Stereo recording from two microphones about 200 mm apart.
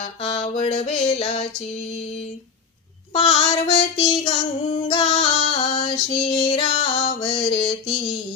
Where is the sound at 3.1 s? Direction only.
30° left (ahead or behind).